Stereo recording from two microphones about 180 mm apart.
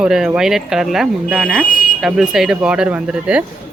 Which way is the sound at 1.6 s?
50° left (ahead or behind).